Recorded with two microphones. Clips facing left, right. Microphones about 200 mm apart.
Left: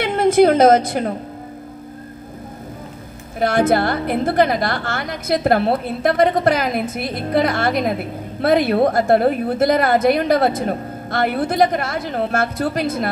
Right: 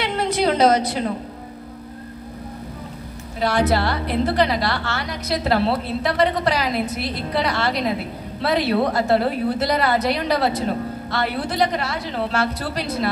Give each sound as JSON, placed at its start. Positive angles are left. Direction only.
{"t": 0.0, "sound": "a woman's voice", "side_deg": 50}
{"t": 3.3, "sound": "a woman's voice", "side_deg": 50}